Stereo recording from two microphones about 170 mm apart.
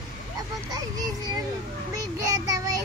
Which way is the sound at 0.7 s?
25° right (ahead or behind).